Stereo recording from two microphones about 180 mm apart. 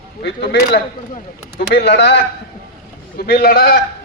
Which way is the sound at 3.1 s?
65° left (ahead or behind).